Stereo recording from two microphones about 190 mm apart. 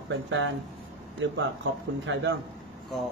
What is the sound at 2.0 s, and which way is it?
Speech, 75° right (ahead or behind).